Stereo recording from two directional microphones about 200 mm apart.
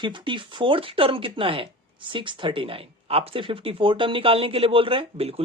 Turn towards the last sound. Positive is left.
turn(degrees=-30)  # may be behind; listen again after turning